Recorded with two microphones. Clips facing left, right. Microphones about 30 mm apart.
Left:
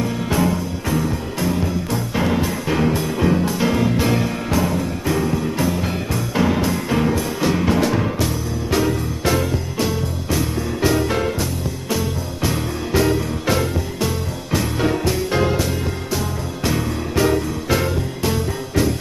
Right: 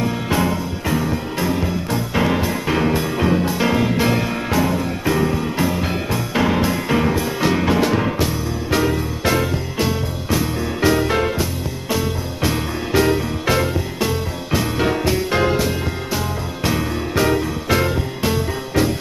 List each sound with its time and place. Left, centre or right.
0.0 s music: centre